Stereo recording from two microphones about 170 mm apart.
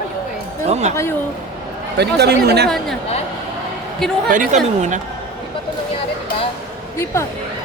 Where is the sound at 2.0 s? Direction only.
75° right (ahead or behind).